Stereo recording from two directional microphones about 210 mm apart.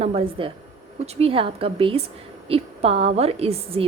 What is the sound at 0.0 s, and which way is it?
A woman's voice, 30° right (ahead or behind).